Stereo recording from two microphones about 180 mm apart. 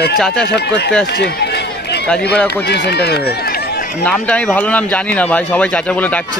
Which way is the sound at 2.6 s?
70° left (ahead or behind).